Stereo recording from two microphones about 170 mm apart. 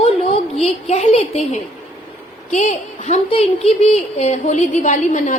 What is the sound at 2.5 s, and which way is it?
A woman's voice, 45° left (ahead or behind).